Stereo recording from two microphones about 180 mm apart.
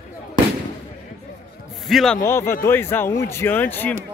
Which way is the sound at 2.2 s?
15° left (ahead or behind).